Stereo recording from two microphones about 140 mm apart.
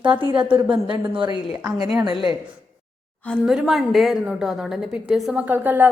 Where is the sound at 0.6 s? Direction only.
35° right (ahead or behind).